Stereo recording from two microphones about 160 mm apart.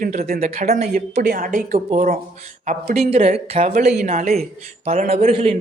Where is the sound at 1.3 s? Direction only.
60° right (ahead or behind).